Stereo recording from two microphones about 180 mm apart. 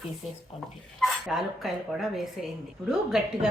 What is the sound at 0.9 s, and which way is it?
Speech, centre (ahead or behind).